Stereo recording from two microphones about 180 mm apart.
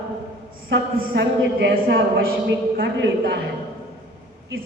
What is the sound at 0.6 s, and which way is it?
A woman's voice, 75° right (ahead or behind).